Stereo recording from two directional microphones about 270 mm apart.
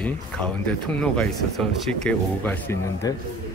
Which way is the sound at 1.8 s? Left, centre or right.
Centre.